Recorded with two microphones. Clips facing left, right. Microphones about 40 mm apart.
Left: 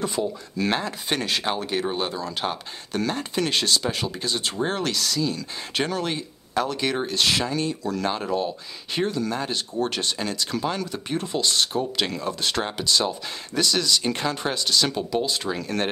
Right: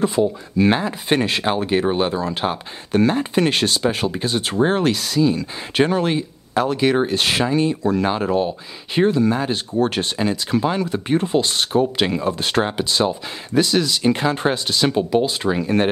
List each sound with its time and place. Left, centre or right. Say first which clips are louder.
0.0 s speech: right 8 dB; centre